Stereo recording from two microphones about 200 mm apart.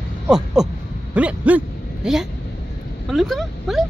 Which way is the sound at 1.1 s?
5° right (ahead or behind).